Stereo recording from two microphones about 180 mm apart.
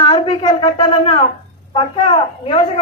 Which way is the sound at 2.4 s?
30° left (ahead or behind).